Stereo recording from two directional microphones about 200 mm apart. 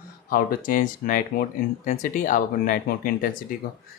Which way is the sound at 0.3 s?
45° left (ahead or behind).